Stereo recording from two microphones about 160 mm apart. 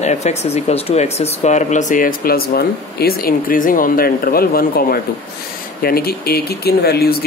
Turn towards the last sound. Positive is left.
turn(degrees=80)